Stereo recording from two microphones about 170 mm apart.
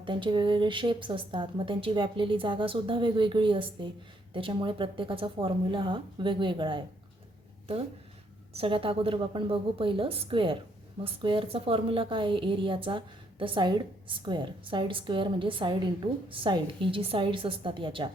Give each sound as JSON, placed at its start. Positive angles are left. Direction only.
{"t": 0.0, "sound": "a woman's voice", "side_deg": -30}
{"t": 8.5, "sound": "a woman's voice", "side_deg": -30}